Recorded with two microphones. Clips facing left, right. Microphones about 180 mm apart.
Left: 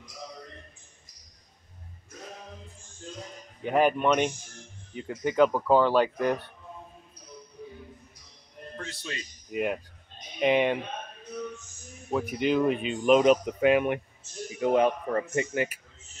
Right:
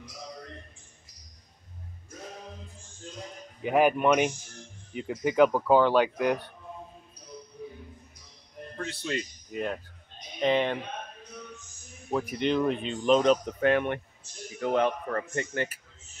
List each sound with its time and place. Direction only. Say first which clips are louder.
3.6 s speech: right 1 dB; 5° right (ahead or behind)
9.5 s speech: left 4 dB; 10° left (ahead or behind)
12.1 s speech: left 1 dB; centre (ahead or behind)